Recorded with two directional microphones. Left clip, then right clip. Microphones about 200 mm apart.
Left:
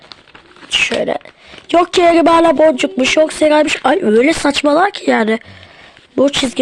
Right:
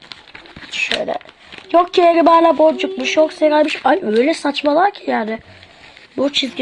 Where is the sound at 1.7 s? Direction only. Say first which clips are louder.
Left 2 dB; 55° left (ahead or behind).